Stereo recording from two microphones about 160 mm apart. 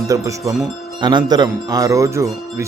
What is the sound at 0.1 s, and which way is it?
A man's voice, 20° right (ahead or behind).